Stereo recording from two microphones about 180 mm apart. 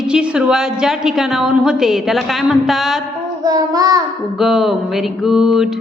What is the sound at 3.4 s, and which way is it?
Child singing, 20° right (ahead or behind).